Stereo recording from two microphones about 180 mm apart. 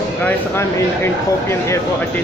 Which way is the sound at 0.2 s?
15° left (ahead or behind).